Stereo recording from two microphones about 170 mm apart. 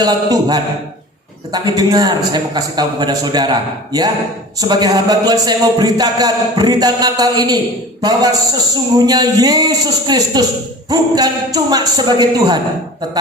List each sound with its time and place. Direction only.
0.0 s a man's voice: 25° right (ahead or behind)
8.7 s a man's voice: 20° right (ahead or behind)